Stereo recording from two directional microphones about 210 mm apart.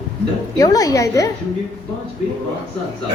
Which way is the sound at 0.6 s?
15° left (ahead or behind).